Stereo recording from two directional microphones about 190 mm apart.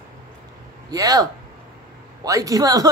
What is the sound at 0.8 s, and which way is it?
A man's voice, 20° right (ahead or behind).